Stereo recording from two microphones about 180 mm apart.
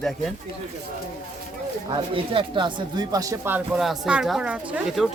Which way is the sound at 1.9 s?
30° right (ahead or behind).